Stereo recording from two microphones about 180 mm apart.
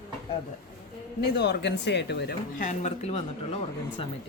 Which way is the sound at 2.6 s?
40° left (ahead or behind).